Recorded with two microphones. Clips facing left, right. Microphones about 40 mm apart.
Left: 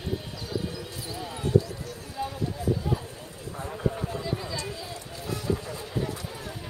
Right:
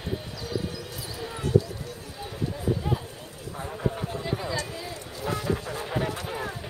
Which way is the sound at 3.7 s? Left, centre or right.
Centre.